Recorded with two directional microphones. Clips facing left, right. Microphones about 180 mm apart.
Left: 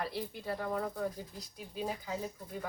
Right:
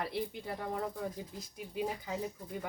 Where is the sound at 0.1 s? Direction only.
20° right (ahead or behind).